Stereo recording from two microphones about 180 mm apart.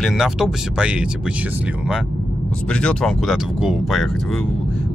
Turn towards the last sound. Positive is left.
turn(degrees=0)  # may be behind; listen again after turning